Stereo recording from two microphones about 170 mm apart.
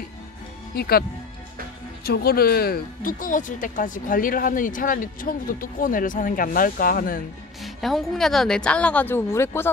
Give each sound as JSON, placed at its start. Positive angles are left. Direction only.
{"t": 0.7, "sound": "speech", "side_deg": 65}
{"t": 2.0, "sound": "speech", "side_deg": 65}
{"t": 7.6, "sound": "a woman's voice", "side_deg": 0}